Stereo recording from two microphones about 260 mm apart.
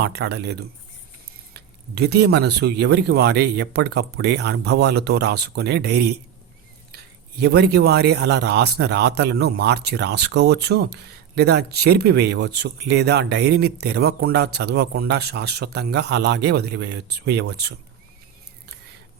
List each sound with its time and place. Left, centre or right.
0.0 s a man's voice: right